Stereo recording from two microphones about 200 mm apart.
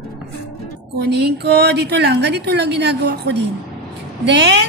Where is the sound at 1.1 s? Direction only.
55° right (ahead or behind).